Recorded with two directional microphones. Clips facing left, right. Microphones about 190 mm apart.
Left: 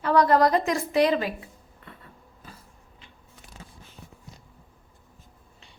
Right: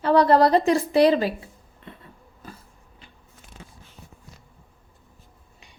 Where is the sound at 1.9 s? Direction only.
20° right (ahead or behind).